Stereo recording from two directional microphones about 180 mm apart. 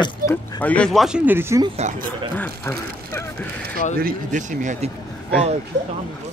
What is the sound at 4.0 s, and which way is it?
Speech, 50° right (ahead or behind).